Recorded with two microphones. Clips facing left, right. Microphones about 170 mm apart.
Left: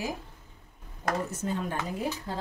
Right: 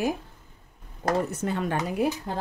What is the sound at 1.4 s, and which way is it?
Speech, 75° right (ahead or behind).